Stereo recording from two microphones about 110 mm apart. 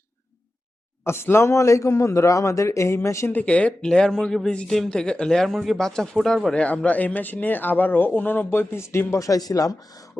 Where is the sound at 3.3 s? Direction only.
10° left (ahead or behind); by 9.7 s 30° left (ahead or behind).